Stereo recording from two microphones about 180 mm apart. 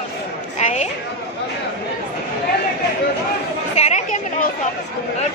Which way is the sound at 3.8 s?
40° left (ahead or behind).